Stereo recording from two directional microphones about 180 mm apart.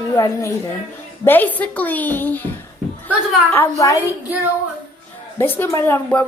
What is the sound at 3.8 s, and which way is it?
Speech, 15° left (ahead or behind).